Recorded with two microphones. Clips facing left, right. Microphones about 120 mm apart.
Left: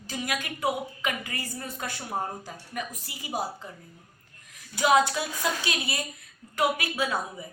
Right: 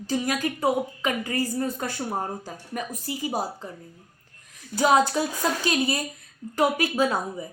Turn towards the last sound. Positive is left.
turn(degrees=-40)  # may be behind; listen again after turning